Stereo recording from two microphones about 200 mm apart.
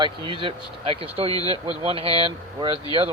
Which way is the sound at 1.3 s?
20° left (ahead or behind).